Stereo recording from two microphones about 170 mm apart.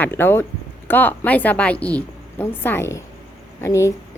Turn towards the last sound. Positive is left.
turn(degrees=15)  # may be behind; listen again after turning